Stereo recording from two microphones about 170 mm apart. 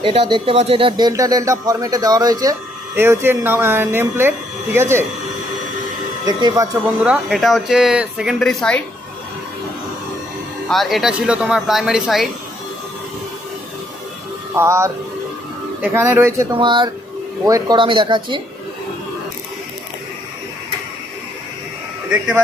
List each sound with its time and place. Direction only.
0.0 s speech: 30° right (ahead or behind); by 5.0 s 15° right (ahead or behind)
6.2 s speech: 20° right (ahead or behind)
6.8 s speech: 5° right (ahead or behind)
10.7 s speech: centre (ahead or behind)
14.5 s a man's voice: 15° right (ahead or behind)
16.6 s speech: 30° right (ahead or behind)